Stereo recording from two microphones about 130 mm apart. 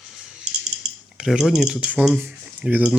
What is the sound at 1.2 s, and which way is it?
Speech, 5° right (ahead or behind).